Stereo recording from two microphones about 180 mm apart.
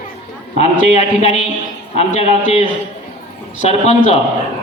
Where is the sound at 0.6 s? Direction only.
35° left (ahead or behind).